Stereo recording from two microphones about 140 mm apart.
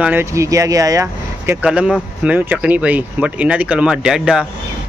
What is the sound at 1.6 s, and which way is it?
Speech, 5° right (ahead or behind).